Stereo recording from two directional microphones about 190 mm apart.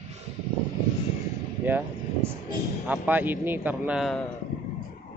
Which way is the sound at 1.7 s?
10° right (ahead or behind).